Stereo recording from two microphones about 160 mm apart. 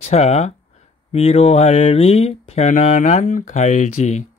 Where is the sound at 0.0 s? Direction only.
40° left (ahead or behind).